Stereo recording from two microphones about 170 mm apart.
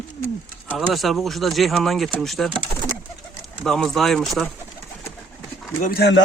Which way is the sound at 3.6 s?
Centre (ahead or behind).